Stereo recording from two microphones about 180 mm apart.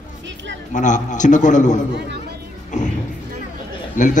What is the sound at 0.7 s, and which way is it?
A man's voice, 45° left (ahead or behind).